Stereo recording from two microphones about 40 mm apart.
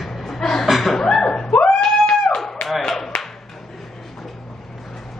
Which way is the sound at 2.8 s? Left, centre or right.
Centre.